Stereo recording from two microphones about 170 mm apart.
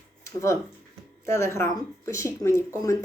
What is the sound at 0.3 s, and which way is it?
Speech, 15° left (ahead or behind).